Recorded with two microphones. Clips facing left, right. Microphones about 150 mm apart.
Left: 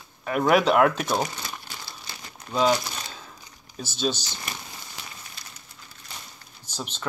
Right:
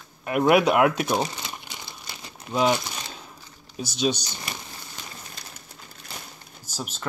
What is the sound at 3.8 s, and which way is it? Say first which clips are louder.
Speech: right 2 dB; 15° right (ahead or behind).